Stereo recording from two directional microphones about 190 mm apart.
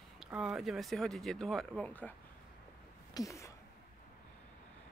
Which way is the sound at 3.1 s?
15° left (ahead or behind).